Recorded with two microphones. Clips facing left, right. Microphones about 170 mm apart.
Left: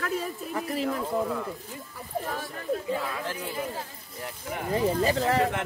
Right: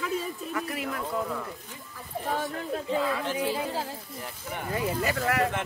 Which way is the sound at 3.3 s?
90° right.